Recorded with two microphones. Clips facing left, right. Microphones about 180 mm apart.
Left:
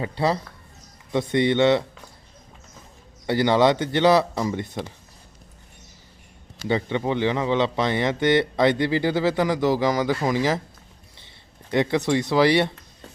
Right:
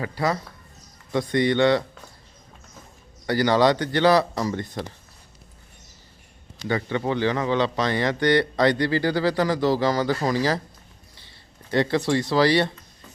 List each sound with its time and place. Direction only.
0.0 s a man's voice: 25° left (ahead or behind)
3.2 s a man's voice: 20° left (ahead or behind)
6.7 s a man's voice: 20° left (ahead or behind)
11.7 s a man's voice: 20° left (ahead or behind)